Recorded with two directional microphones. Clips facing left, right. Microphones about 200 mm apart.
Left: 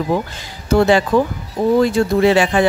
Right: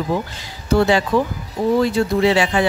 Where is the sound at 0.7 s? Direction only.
50° left (ahead or behind).